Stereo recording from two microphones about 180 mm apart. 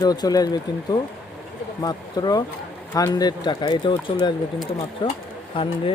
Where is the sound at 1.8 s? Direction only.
20° left (ahead or behind).